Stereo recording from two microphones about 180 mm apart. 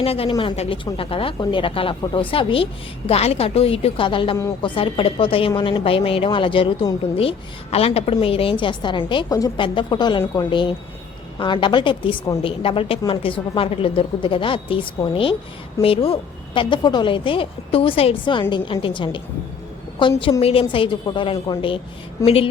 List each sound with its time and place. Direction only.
0.0 s a woman's voice: 30° left (ahead or behind)